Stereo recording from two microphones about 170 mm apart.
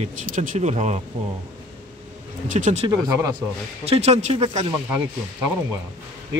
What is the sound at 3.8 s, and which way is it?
Speech, 40° right (ahead or behind).